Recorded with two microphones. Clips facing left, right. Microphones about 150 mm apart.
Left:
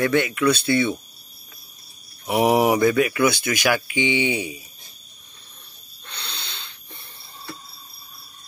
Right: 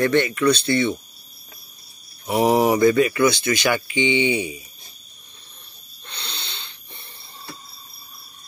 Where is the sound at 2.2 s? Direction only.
15° left (ahead or behind).